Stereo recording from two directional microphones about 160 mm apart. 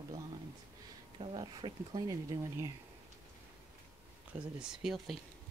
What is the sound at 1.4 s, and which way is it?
Speech, 25° right (ahead or behind).